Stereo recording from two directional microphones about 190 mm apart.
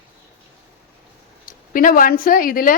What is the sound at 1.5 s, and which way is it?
A woman's voice, 45° left (ahead or behind).